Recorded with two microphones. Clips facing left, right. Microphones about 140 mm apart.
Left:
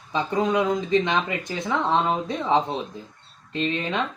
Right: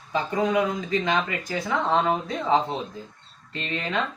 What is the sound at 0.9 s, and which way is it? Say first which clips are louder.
Speech: left 1 dB; 25° left (ahead or behind).